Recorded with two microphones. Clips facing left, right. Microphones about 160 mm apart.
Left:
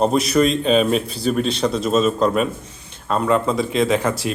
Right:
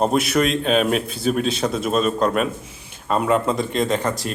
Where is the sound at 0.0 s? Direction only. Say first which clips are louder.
Left 2 dB; 5° right (ahead or behind).